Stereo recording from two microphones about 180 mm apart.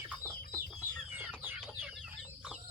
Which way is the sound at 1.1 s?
10° right (ahead or behind).